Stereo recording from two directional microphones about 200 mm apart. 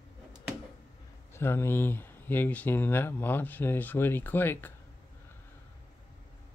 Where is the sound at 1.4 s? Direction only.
10° left (ahead or behind).